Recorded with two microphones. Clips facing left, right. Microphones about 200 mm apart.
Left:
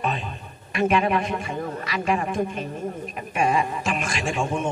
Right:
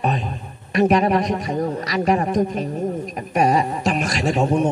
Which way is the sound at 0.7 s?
40° right (ahead or behind).